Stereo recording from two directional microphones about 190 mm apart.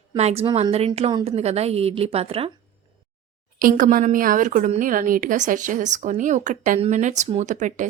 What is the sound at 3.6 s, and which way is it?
A woman's voice, 45° right (ahead or behind).